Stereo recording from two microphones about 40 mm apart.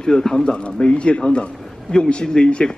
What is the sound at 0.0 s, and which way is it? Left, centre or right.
A man's voice, centre.